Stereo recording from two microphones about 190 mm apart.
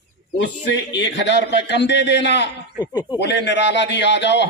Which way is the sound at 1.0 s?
70° left (ahead or behind).